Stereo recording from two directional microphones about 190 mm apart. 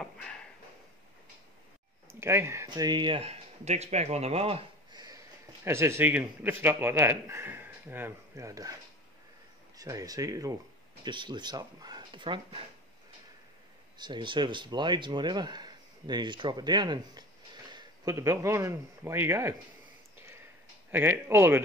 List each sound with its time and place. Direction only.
0.0 s a sound: 5° left (ahead or behind)
2.0 s speech: 15° right (ahead or behind)
9.8 s speech: 20° right (ahead or behind)
13.9 s a man's voice: 25° right (ahead or behind)
20.2 s a sound: 15° right (ahead or behind)
20.9 s speech: 10° right (ahead or behind)